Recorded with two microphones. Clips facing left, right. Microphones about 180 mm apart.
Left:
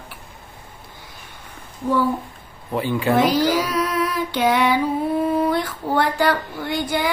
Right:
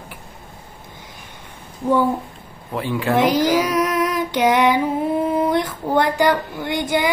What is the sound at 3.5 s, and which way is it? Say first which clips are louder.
Female singing: right 3 dB; 15° right (ahead or behind).